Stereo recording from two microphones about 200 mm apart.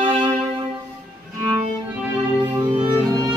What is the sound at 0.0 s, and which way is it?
Music, 25° right (ahead or behind).